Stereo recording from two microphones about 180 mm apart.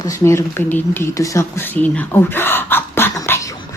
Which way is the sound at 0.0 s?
15° left (ahead or behind).